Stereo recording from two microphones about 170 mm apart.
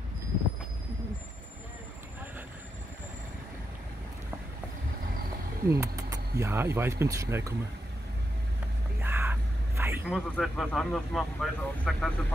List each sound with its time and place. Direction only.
5.7 s speech: 15° right (ahead or behind)
9.0 s vehicle: 10° right (ahead or behind)
10.0 s speech: centre (ahead or behind)